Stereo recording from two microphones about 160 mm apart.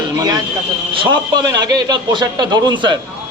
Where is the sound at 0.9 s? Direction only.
25° right (ahead or behind).